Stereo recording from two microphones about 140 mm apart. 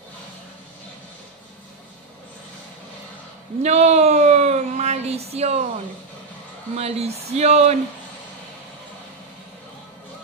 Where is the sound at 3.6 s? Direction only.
55° right (ahead or behind).